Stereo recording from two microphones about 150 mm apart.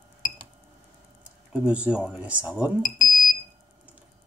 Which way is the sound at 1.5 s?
10° right (ahead or behind).